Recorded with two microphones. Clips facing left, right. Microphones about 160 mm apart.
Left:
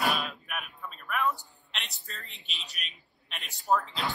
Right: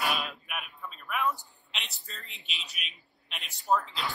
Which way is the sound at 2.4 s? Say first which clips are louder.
Right 1 dB; 40° left (ahead or behind).